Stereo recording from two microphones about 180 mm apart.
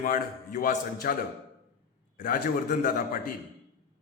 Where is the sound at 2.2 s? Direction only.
55° left (ahead or behind).